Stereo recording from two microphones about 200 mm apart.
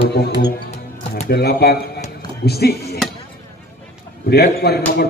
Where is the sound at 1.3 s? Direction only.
50° left (ahead or behind).